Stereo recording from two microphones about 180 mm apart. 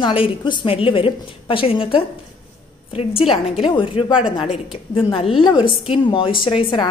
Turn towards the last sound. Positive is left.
turn(degrees=25)  # may be behind; listen again after turning